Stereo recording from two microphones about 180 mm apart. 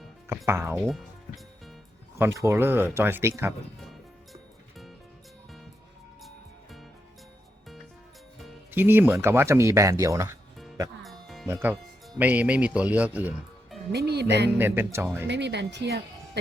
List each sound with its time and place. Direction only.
0.3 s speech: 15° right (ahead or behind)
2.1 s speech: 15° right (ahead or behind)
3.8 s music: centre (ahead or behind)
8.7 s speech: 10° right (ahead or behind)
11.0 s music: centre (ahead or behind)
11.4 s speech: 15° right (ahead or behind)
13.9 s speech: 65° right (ahead or behind)
14.6 s speech: 15° right (ahead or behind)
15.3 s speech: 75° right (ahead or behind)